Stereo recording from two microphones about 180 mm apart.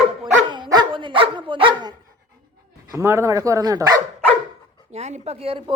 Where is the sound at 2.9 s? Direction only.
15° right (ahead or behind).